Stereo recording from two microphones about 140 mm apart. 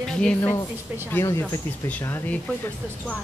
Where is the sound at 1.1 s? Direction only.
15° left (ahead or behind).